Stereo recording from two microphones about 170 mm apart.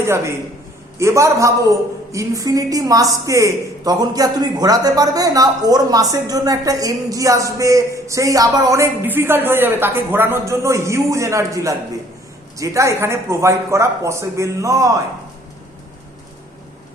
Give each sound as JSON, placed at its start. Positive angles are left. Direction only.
{"t": 0.0, "sound": "a man's voice", "side_deg": -15}